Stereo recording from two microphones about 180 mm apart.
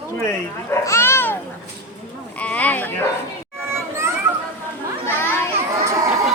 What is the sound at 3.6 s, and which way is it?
Children playing, 15° right (ahead or behind).